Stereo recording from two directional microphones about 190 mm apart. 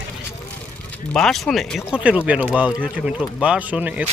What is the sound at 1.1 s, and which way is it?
Speech, 5° left (ahead or behind).